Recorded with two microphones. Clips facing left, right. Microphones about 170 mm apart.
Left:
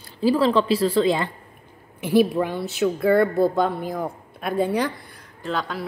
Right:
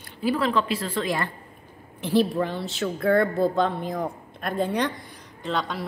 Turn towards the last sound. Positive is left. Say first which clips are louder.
# left 1 dB
turn(degrees=5)  # may be behind; listen again after turning